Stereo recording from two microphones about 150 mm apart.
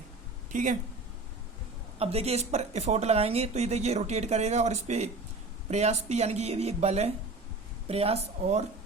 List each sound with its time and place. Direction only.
0.5 s speech: 55° right (ahead or behind)
2.0 s speech: 40° right (ahead or behind)